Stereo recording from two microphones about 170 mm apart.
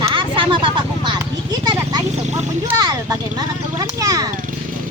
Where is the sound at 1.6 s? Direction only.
25° right (ahead or behind).